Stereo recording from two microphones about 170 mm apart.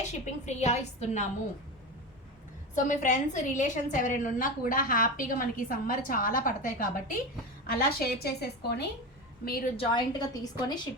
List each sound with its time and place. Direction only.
0.0 s a woman's voice: 40° left (ahead or behind)
2.7 s a woman's voice: 50° left (ahead or behind); by 8.9 s 75° left (ahead or behind)
9.4 s a woman's voice: 60° left (ahead or behind)
9.7 s a woman's voice: 30° left (ahead or behind)